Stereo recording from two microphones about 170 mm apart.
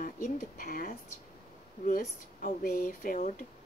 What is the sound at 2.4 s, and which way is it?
Speech, 55° left (ahead or behind).